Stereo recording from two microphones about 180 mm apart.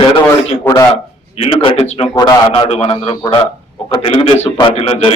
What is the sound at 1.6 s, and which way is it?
A man's voice, 30° left (ahead or behind).